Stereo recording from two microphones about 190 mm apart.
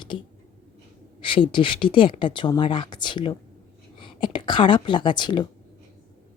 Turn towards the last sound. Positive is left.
turn(degrees=25)  # may be behind; listen again after turning